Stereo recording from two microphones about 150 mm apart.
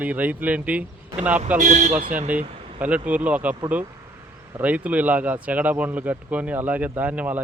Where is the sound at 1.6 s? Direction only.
55° right (ahead or behind).